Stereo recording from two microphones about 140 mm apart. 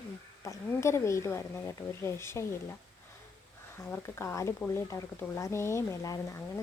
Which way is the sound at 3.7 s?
15° left (ahead or behind).